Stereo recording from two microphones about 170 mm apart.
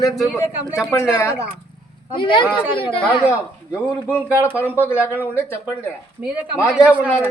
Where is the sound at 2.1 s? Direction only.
30° left (ahead or behind).